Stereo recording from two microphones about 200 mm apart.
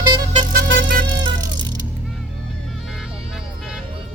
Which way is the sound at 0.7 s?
65° right (ahead or behind).